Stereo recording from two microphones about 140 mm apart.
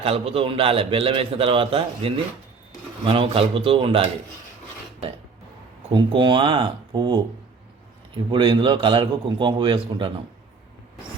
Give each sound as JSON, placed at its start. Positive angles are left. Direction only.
{"t": 0.0, "sound": "a man's voice", "side_deg": -45}
{"t": 5.9, "sound": "a man's voice", "side_deg": -35}